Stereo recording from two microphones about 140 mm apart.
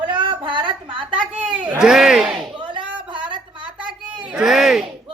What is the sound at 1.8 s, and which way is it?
Speech, 5° right (ahead or behind).